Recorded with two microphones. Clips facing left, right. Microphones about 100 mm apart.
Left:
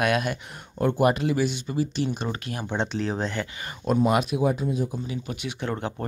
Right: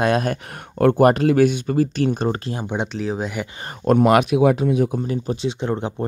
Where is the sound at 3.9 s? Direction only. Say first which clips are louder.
Right 7 dB; 70° right (ahead or behind).